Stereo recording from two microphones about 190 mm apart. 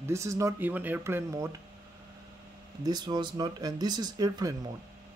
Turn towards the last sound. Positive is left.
turn(degrees=-20)  # may be behind; listen again after turning